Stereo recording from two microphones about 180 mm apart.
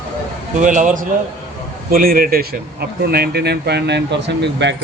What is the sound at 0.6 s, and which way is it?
A man's voice, 45° right (ahead or behind).